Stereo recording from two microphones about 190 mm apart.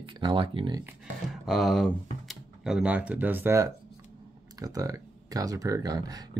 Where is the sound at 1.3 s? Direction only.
Centre (ahead or behind).